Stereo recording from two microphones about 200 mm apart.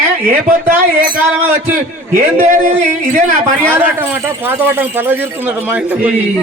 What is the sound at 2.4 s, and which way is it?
A man's voice, 35° right (ahead or behind).